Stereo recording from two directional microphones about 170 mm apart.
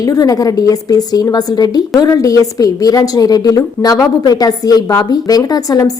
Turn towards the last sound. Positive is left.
turn(degrees=20)  # may be behind; listen again after turning